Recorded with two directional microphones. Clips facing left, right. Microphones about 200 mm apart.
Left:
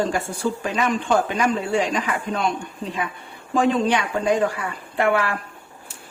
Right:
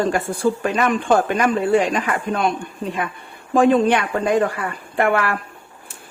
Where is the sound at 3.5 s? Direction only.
55° right (ahead or behind).